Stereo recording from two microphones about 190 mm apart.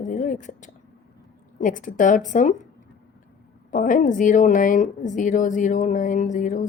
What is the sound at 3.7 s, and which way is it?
Speech, 45° left (ahead or behind).